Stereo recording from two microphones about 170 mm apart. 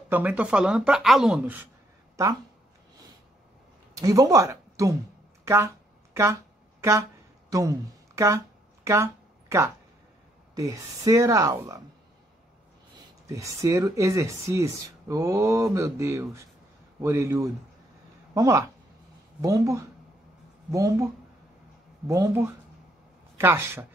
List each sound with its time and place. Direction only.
0.1 s speech: 10° right (ahead or behind)
2.2 s speech: 20° right (ahead or behind)
3.9 s speech: 20° right (ahead or behind)
6.1 s a sound: 15° right (ahead or behind)
8.8 s a sound: 15° right (ahead or behind)
10.5 s speech: 20° right (ahead or behind)
13.3 s speech: 20° right (ahead or behind)